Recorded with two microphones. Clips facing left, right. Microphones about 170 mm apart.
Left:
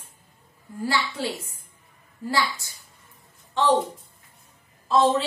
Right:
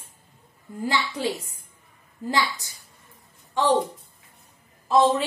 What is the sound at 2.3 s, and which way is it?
Speech, 20° right (ahead or behind).